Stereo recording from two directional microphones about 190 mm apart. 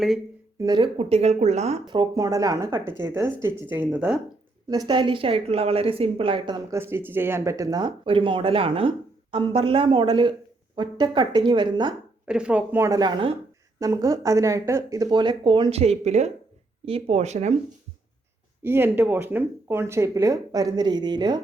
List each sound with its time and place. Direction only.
0.6 s speech: 25° right (ahead or behind)
1.9 s speech: 20° right (ahead or behind)
4.7 s a woman's voice: 20° right (ahead or behind)
12.3 s a woman's voice: 5° right (ahead or behind); by 17.5 s 35° right (ahead or behind)
18.6 s speech: 10° right (ahead or behind)